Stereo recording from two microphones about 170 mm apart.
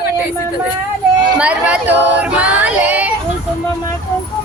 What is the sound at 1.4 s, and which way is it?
Singing, 5° right (ahead or behind).